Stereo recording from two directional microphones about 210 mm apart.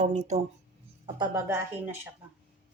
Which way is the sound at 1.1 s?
15° right (ahead or behind).